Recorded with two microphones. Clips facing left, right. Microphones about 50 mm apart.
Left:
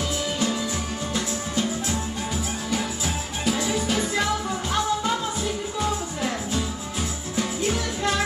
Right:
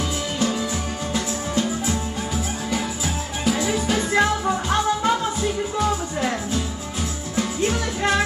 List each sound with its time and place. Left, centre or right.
1.1 s music: centre
3.4 s music: centre
4.2 s music: right